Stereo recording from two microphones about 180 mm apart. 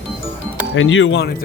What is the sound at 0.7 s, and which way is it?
Speech, 90° left.